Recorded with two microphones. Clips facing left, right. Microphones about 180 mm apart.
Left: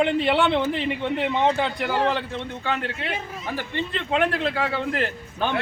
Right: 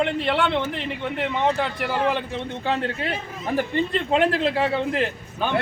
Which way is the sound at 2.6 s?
30° right (ahead or behind).